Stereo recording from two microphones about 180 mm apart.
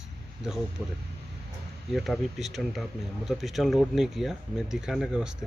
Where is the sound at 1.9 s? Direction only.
Centre (ahead or behind).